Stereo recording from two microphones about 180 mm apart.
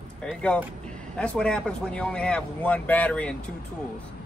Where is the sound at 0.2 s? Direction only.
5° left (ahead or behind).